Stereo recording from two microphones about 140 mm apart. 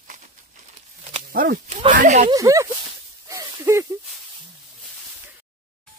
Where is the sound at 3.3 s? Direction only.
20° right (ahead or behind).